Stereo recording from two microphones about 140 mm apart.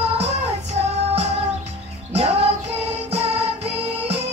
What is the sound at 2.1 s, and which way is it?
Music, 45° right (ahead or behind).